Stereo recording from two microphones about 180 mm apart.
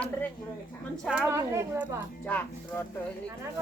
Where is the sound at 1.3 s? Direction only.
15° right (ahead or behind).